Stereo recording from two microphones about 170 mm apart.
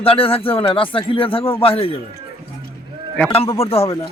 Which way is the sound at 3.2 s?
35° left (ahead or behind).